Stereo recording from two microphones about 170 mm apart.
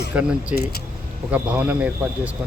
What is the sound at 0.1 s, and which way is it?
Speech, 10° right (ahead or behind).